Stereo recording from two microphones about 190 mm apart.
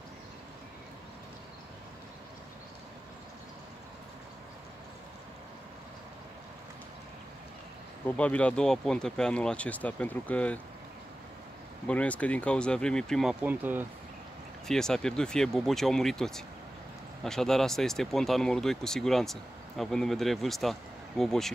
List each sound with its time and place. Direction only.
8.2 s speech: 5° left (ahead or behind)
11.9 s speech: 5° left (ahead or behind); by 13.8 s 10° right (ahead or behind)
14.7 s speech: 5° left (ahead or behind)